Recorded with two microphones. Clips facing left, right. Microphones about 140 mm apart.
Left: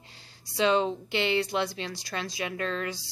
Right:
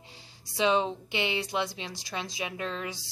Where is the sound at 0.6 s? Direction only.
15° right (ahead or behind).